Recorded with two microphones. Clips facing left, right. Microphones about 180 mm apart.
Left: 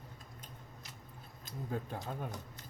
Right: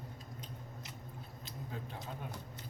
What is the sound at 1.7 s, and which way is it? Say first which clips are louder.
Speech: left 6 dB; 50° left (ahead or behind).